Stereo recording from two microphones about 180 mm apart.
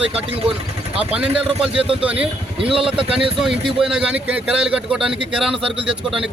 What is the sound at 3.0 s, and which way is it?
Speech, 30° right (ahead or behind).